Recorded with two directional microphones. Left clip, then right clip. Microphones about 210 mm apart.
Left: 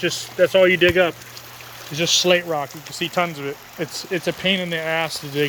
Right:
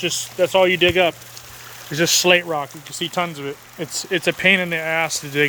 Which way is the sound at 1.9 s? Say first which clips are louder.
Right 1 dB; 20° right (ahead or behind).